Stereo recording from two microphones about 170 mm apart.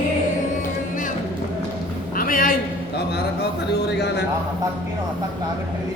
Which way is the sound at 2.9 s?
75° left (ahead or behind).